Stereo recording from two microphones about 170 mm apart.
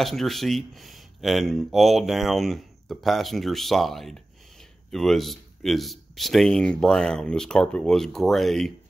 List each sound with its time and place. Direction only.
0.0 s speech: centre (ahead or behind)